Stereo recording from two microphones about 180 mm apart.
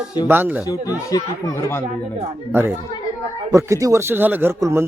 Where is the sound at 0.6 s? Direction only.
20° left (ahead or behind).